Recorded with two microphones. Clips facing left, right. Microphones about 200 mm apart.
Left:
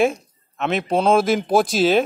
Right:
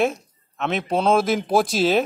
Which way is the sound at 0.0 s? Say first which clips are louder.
Left 3 dB; centre (ahead or behind).